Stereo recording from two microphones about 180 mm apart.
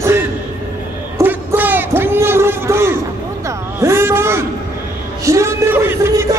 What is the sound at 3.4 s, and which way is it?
Music, 15° right (ahead or behind).